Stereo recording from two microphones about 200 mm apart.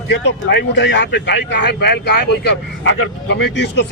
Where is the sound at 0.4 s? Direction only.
60° left (ahead or behind).